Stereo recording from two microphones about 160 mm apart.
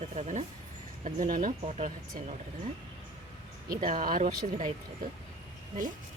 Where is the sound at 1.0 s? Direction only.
50° right (ahead or behind).